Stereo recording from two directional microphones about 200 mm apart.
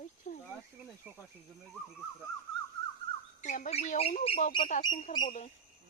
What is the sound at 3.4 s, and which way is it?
Speech, 40° left (ahead or behind).